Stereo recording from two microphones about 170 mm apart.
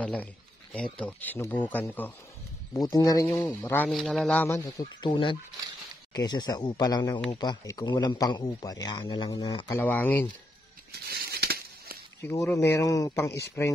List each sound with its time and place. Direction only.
0.0 s a man's voice: 5° left (ahead or behind); by 9.8 s 25° left (ahead or behind)
9.8 s a man's voice: 10° left (ahead or behind)
11.1 s crumpling: 65° right (ahead or behind)
12.2 s a man's voice: 15° left (ahead or behind)